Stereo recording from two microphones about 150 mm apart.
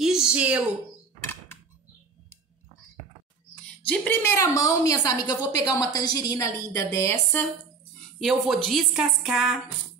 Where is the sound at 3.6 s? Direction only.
10° left (ahead or behind).